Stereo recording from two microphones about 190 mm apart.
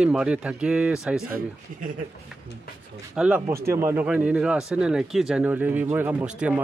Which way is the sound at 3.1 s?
5° right (ahead or behind).